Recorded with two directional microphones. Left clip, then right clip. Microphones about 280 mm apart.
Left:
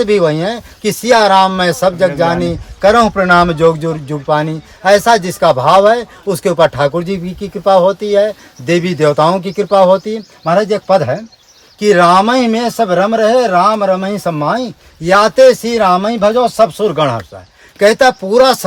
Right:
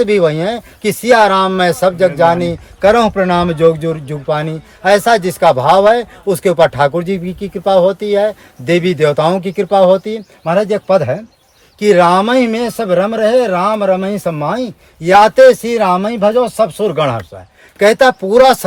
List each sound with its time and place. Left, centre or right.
0.0 s speech: centre